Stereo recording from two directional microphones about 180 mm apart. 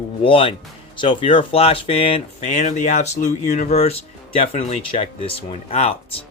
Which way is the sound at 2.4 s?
45° left (ahead or behind).